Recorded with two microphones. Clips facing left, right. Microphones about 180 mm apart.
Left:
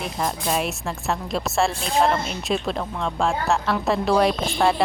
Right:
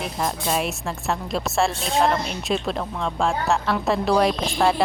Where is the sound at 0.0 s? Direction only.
Centre (ahead or behind).